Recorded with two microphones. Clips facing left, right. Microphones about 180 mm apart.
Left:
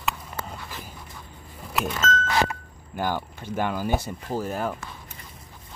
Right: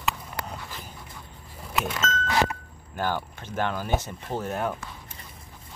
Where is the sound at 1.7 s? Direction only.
Centre (ahead or behind).